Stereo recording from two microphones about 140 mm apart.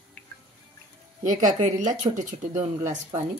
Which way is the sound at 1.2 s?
65° right (ahead or behind).